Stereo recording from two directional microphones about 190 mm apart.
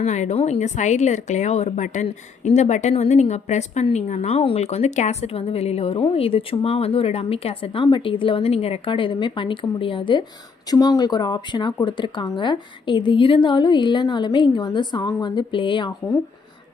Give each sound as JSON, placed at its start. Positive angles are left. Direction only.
{"t": 0.0, "sound": "a woman's voice", "side_deg": 40}